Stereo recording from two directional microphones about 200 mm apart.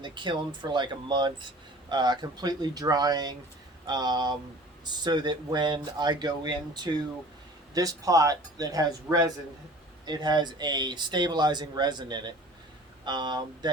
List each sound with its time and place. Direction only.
0.0 s speech: 25° right (ahead or behind)